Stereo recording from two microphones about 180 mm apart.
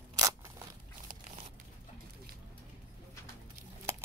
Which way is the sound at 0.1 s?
20° right (ahead or behind).